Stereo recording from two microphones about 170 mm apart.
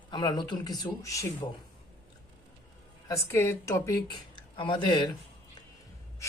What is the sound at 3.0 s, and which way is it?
Speech, 15° left (ahead or behind).